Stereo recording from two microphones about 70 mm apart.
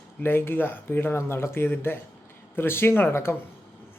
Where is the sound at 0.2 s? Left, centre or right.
Left.